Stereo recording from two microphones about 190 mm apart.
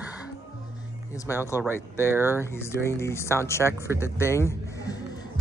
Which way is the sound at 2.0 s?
10° right (ahead or behind).